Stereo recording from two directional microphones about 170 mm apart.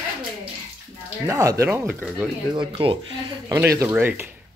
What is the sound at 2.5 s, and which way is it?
Speech, 30° right (ahead or behind).